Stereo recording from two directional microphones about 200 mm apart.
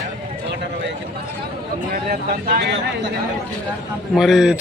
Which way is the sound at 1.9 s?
50° right (ahead or behind).